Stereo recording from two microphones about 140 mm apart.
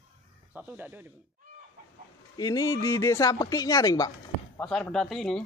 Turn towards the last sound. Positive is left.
turn(degrees=5)  # may be behind; listen again after turning